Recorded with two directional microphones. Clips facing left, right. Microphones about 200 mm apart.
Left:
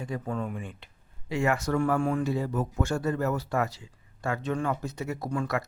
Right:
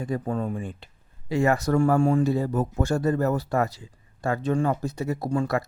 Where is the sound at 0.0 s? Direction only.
40° right (ahead or behind).